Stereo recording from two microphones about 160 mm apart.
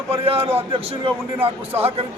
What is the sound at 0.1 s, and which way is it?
Speech, 35° right (ahead or behind).